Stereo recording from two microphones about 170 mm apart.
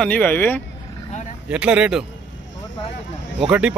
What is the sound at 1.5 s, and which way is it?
Speech, 5° right (ahead or behind).